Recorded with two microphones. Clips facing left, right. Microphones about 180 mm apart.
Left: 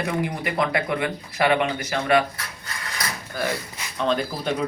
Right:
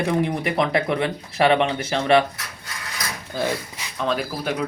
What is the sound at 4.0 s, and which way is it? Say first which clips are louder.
Speech: left 1 dB; 5° right (ahead or behind).